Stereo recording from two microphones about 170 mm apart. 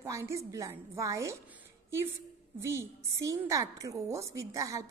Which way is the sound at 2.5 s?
15° right (ahead or behind).